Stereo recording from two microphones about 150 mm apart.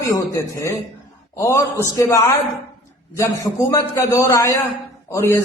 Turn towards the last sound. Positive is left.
turn(degrees=20)  # may be behind; listen again after turning